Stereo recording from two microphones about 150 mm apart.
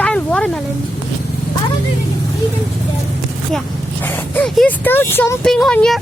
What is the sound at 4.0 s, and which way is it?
Speech, 15° left (ahead or behind).